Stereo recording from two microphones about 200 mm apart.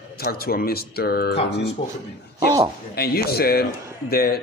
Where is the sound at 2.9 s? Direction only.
50° left (ahead or behind).